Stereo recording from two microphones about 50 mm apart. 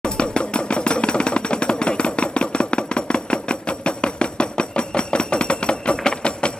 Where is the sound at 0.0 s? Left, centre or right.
Centre.